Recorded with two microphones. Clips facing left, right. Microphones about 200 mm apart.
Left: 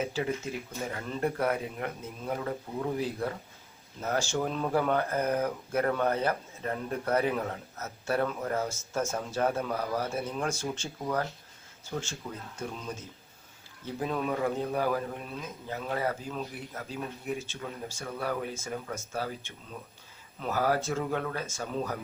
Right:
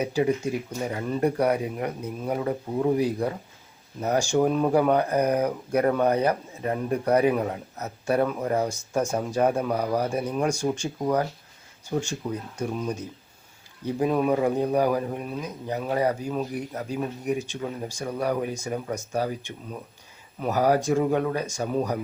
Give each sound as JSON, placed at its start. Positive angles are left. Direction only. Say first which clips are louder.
{"t": 0.0, "sound": "speech", "louder": "right 7 dB", "side_deg": -15}
{"t": 11.9, "sound": "speech", "louder": "right 9 dB", "side_deg": -15}